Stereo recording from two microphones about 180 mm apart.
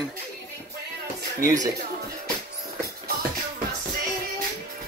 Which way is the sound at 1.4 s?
20° right (ahead or behind).